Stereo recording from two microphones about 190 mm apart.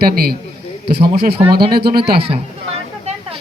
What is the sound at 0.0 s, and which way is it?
A man's voice, 55° right (ahead or behind).